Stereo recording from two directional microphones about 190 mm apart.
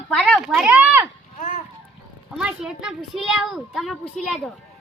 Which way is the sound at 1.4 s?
45° left (ahead or behind).